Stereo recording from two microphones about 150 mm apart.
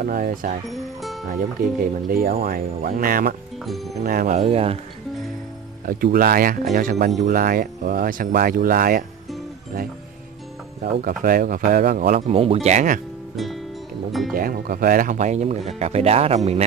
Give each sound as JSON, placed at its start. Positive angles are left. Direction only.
{"t": 0.0, "sound": "speech", "side_deg": -70}
{"t": 1.8, "sound": "speech", "side_deg": -75}
{"t": 3.6, "sound": "speech", "side_deg": 0}
{"t": 4.0, "sound": "speech", "side_deg": -70}
{"t": 4.4, "sound": "speech", "side_deg": -45}
{"t": 5.9, "sound": "speech", "side_deg": -70}
{"t": 11.0, "sound": "speech", "side_deg": -70}
{"t": 12.3, "sound": "speech", "side_deg": -40}
{"t": 14.3, "sound": "speech", "side_deg": -75}